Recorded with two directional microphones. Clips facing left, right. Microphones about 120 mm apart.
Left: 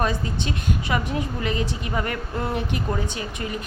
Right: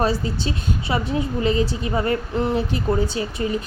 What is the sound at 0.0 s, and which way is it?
A woman's voice, 30° right (ahead or behind).